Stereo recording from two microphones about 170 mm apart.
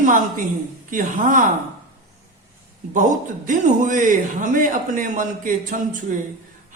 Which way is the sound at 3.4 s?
50° right (ahead or behind).